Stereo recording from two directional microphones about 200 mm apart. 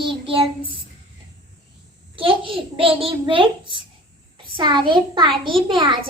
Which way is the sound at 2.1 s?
25° right (ahead or behind).